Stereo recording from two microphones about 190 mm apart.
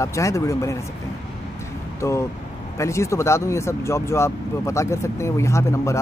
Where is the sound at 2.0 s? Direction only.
15° left (ahead or behind).